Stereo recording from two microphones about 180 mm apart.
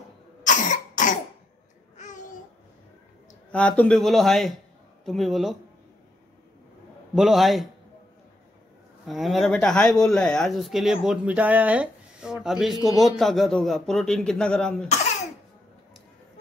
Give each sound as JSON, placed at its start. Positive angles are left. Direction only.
{"t": 0.5, "sound": "cough", "side_deg": 45}
{"t": 3.5, "sound": "a man's voice", "side_deg": 5}
{"t": 7.2, "sound": "a man's voice", "side_deg": 0}
{"t": 9.0, "sound": "a man's voice", "side_deg": 0}